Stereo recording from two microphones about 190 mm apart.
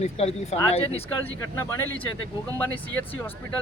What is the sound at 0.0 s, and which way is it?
Speech, 35° left (ahead or behind).